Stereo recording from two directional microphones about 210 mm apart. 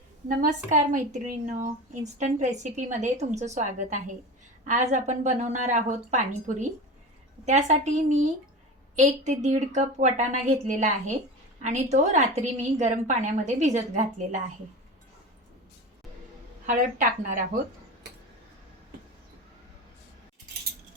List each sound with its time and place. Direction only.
0.3 s a woman's voice: 40° right (ahead or behind)
16.6 s a woman's voice: 40° right (ahead or behind)